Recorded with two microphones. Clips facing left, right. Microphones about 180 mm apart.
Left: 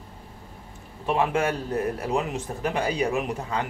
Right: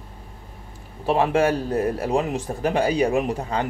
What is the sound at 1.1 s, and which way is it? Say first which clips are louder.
Speech: right 5 dB; 30° right (ahead or behind).